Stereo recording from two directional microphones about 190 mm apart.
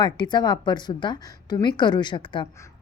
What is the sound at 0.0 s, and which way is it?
A woman's voice, 25° left (ahead or behind).